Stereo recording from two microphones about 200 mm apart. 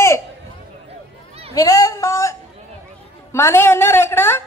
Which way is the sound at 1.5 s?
15° left (ahead or behind).